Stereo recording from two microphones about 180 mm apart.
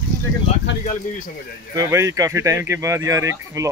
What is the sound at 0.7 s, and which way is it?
Speech, 85° left.